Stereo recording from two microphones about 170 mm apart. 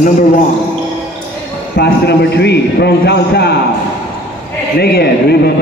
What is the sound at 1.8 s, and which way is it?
A man's voice, 75° left (ahead or behind).